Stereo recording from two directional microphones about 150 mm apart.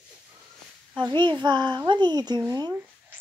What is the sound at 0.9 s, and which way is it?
A woman's voice, 30° right (ahead or behind).